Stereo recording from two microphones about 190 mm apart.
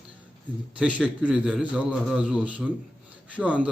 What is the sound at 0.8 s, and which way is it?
A man's voice, 5° right (ahead or behind).